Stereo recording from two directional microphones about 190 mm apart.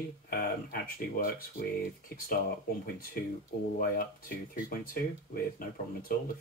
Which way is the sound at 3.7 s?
50° left (ahead or behind).